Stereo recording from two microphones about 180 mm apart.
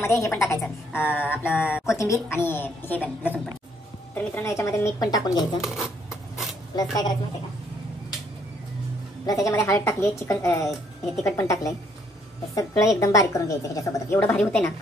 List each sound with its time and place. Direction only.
0.0 s a woman's voice: 15° left (ahead or behind)
5.6 s a sound: centre (ahead or behind)
6.7 s speech: 20° left (ahead or behind)
9.2 s a woman's voice: 20° left (ahead or behind)